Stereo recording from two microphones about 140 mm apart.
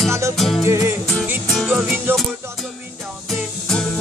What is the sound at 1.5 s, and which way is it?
Music, 5° right (ahead or behind).